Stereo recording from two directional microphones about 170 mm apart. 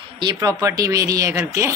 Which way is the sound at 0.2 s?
25° right (ahead or behind).